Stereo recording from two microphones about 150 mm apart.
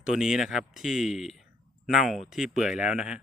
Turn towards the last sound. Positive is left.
turn(degrees=-5)  # may be behind; listen again after turning